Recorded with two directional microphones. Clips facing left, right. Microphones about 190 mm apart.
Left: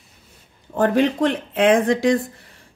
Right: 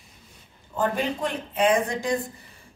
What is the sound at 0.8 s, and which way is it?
Speech, 75° left (ahead or behind).